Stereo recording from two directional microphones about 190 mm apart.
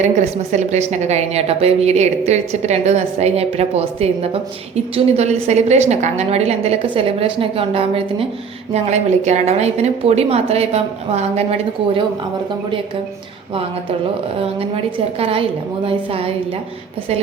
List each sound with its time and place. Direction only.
0.0 s a woman's voice: 40° right (ahead or behind)
14.3 s a woman's voice: 30° right (ahead or behind)